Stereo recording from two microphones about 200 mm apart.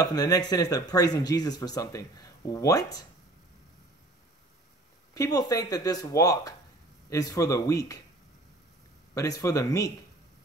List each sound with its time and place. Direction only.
0.0 s speech: 20° left (ahead or behind)
5.1 s speech: 15° left (ahead or behind)
9.1 s speech: 15° left (ahead or behind)